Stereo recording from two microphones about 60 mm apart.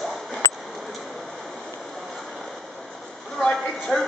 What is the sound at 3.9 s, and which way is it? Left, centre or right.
Speech, centre.